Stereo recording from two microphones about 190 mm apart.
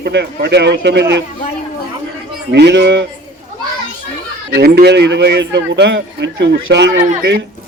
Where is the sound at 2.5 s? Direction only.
65° right (ahead or behind).